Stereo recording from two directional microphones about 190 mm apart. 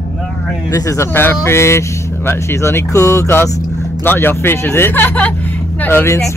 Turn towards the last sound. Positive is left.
turn(degrees=15)  # may be behind; listen again after turning